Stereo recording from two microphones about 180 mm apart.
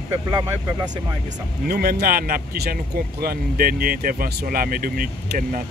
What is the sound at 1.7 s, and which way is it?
Speech, 60° right (ahead or behind).